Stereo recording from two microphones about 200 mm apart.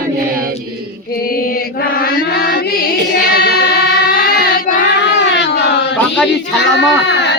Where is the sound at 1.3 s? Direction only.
50° left (ahead or behind).